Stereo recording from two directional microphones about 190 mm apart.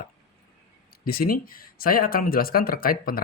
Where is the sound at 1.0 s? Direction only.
50° left (ahead or behind).